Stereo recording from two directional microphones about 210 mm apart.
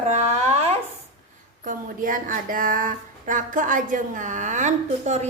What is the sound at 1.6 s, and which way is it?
Speech, 40° right (ahead or behind).